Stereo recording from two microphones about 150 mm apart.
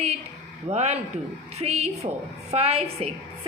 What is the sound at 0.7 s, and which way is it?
A woman's voice, 45° right (ahead or behind).